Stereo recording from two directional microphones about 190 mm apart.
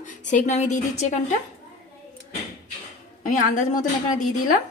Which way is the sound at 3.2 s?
45° left (ahead or behind).